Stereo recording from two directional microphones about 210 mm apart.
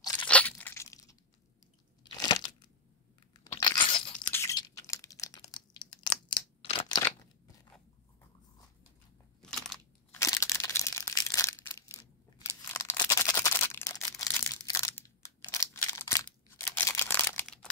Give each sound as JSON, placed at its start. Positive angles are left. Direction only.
{"t": 0.3, "sound": "crunch", "side_deg": 5}
{"t": 2.2, "sound": "crunch", "side_deg": 20}
{"t": 3.5, "sound": "crunch", "side_deg": 20}
{"t": 4.3, "sound": "a sound", "side_deg": 15}
{"t": 9.4, "sound": "crunch", "side_deg": 0}
{"t": 10.1, "sound": "a sound", "side_deg": 15}